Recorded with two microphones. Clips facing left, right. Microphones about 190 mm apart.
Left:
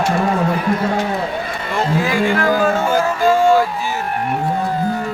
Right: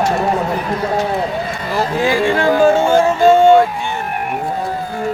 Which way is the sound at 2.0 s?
30° right (ahead or behind).